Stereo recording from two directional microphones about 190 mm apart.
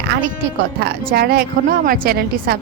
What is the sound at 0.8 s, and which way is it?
Speech, 55° right (ahead or behind).